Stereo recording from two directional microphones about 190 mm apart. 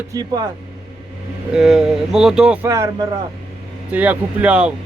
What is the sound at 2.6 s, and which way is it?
Speech, 15° right (ahead or behind).